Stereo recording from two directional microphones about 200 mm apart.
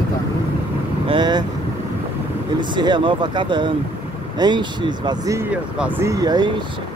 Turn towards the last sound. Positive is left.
turn(degrees=-20)  # may be behind; listen again after turning